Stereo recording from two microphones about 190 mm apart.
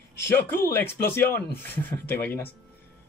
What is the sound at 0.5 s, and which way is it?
Speech, 55° left (ahead or behind).